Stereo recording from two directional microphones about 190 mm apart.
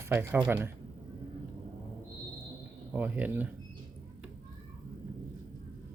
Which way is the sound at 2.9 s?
10° right (ahead or behind).